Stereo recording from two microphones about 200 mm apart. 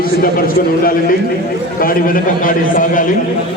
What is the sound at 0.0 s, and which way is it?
A man's voice, 45° left (ahead or behind).